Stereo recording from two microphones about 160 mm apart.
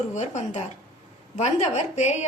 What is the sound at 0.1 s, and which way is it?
A woman's voice, 45° left (ahead or behind).